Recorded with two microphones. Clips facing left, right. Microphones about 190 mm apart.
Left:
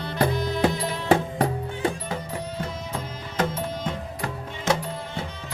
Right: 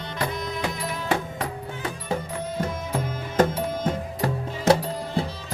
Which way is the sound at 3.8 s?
35° right (ahead or behind).